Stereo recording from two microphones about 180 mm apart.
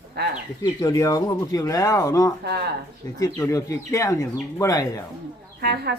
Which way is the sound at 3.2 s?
15° left (ahead or behind).